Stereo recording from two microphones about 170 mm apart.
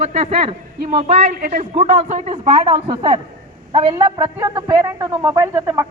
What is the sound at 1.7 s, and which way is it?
Speech, 40° right (ahead or behind).